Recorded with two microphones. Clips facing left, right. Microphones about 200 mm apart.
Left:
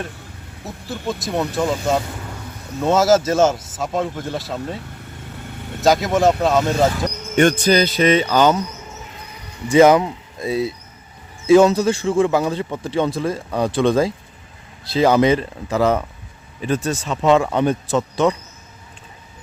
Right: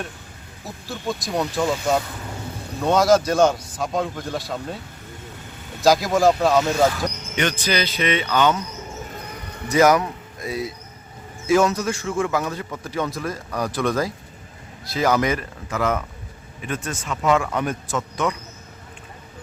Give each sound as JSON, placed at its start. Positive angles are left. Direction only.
{"t": 0.6, "sound": "speech", "side_deg": 0}
{"t": 2.8, "sound": "speech", "side_deg": 5}
{"t": 5.8, "sound": "speech", "side_deg": 0}
{"t": 6.7, "sound": "a man's voice", "side_deg": 25}
{"t": 7.3, "sound": "speech", "side_deg": 45}
{"t": 9.1, "sound": "a sound", "side_deg": -50}
{"t": 9.6, "sound": "a man's voice", "side_deg": 25}